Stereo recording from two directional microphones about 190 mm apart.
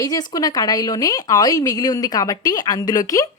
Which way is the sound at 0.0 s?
20° left (ahead or behind).